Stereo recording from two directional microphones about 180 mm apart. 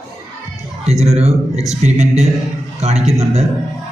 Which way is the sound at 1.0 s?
35° right (ahead or behind).